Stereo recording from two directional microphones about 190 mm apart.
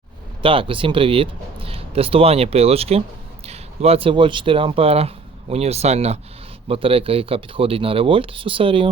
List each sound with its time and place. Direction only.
0.4 s speech: 25° right (ahead or behind)